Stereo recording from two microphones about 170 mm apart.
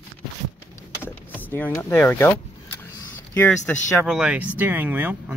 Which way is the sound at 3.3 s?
10° left (ahead or behind).